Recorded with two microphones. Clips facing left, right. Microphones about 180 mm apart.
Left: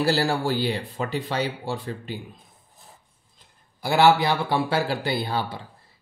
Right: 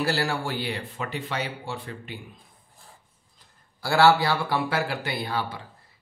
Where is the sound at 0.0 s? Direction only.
30° left (ahead or behind).